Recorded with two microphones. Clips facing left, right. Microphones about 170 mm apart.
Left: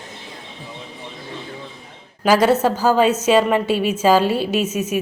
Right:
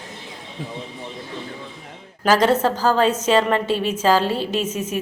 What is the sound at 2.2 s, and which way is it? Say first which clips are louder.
A woman's voice: left 2 dB; 10° left (ahead or behind).